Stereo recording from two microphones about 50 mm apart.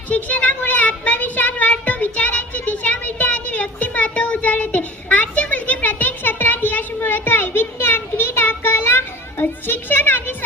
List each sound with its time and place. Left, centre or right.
0.1 s child singing: left